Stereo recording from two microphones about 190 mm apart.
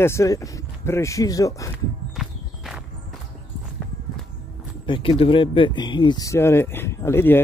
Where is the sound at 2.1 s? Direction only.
Centre (ahead or behind).